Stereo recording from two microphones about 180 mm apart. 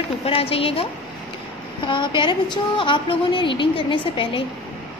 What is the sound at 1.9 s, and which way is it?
A woman's voice, 25° left (ahead or behind).